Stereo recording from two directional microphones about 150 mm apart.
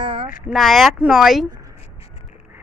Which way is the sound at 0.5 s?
Centre (ahead or behind).